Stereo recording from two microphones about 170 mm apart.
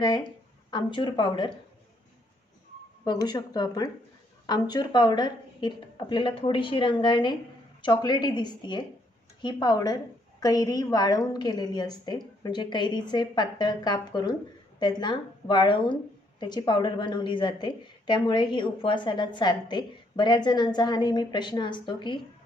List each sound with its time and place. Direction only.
0.0 s speech: 25° left (ahead or behind)
3.0 s speech: 20° left (ahead or behind)